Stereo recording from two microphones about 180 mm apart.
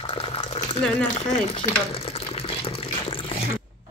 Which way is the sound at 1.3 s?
35° left (ahead or behind).